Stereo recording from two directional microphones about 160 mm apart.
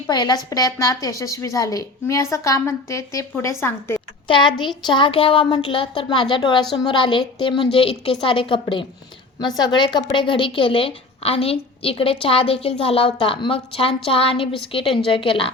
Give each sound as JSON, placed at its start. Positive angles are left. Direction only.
{"t": 0.1, "sound": "a woman's voice", "side_deg": 25}
{"t": 4.3, "sound": "a woman's voice", "side_deg": 30}